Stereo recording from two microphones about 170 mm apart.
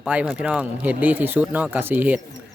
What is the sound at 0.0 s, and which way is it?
Speech, 5° right (ahead or behind).